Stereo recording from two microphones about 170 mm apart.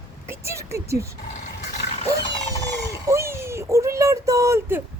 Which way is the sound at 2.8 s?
15° right (ahead or behind).